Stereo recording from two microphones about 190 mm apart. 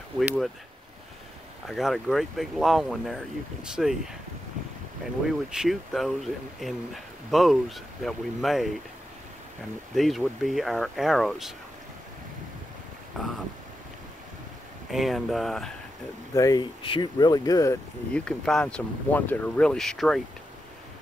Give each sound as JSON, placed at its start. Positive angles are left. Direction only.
{"t": 0.2, "sound": "speech", "side_deg": -10}
{"t": 1.7, "sound": "speech", "side_deg": 0}
{"t": 5.5, "sound": "speech", "side_deg": 0}
{"t": 9.9, "sound": "speech", "side_deg": 0}
{"t": 13.2, "sound": "speech", "side_deg": 0}
{"t": 14.9, "sound": "speech", "side_deg": 0}
{"t": 16.3, "sound": "speech", "side_deg": 20}
{"t": 18.1, "sound": "speech", "side_deg": 5}